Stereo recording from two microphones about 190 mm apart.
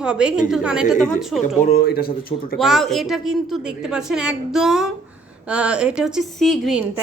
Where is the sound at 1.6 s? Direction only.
50° left (ahead or behind).